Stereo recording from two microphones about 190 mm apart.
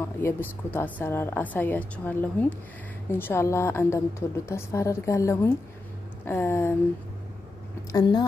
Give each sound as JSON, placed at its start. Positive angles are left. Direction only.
{"t": 0.0, "sound": "a woman's voice", "side_deg": 10}
{"t": 7.9, "sound": "speech", "side_deg": 20}